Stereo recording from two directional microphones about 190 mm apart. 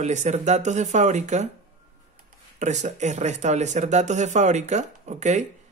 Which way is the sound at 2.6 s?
40° right (ahead or behind).